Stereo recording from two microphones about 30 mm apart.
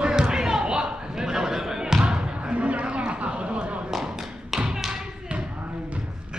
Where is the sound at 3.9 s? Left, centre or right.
Centre.